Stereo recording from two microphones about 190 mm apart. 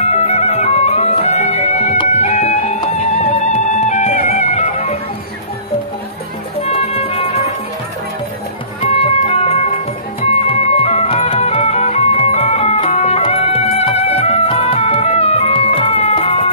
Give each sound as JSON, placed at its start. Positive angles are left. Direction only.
{"t": 0.0, "sound": "music", "side_deg": 35}
{"t": 6.6, "sound": "music", "side_deg": 30}
{"t": 8.8, "sound": "music", "side_deg": 35}